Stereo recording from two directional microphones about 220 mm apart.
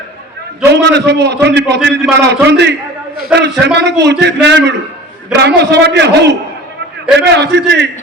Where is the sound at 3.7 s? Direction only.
50° right (ahead or behind).